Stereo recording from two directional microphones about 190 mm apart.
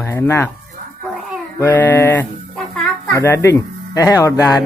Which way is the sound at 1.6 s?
10° left (ahead or behind).